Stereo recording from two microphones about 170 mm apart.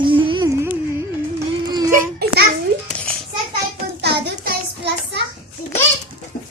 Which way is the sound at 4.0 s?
80° right.